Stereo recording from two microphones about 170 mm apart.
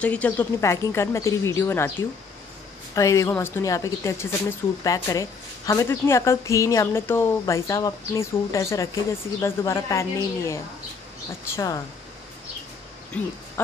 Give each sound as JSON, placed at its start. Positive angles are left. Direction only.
{"t": 0.0, "sound": "speech", "side_deg": 10}
{"t": 2.9, "sound": "speech", "side_deg": 20}
{"t": 13.1, "sound": "speech", "side_deg": 10}